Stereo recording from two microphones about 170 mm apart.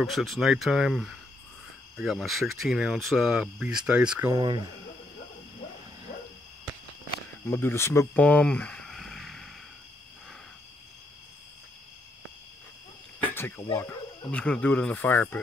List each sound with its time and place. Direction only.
0.0 s speech: centre (ahead or behind)
4.3 s speech: 25° right (ahead or behind)
7.4 s speech: 15° left (ahead or behind)
13.2 s speech: 10° left (ahead or behind)